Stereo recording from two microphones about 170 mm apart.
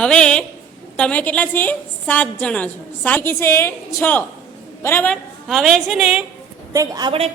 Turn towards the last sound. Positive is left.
turn(degrees=-30)  # may be behind; listen again after turning